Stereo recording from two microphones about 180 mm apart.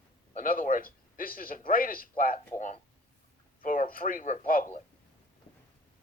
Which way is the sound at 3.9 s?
50° left (ahead or behind).